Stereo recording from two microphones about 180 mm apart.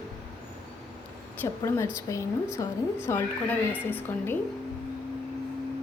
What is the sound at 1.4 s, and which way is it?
Speech, 15° left (ahead or behind).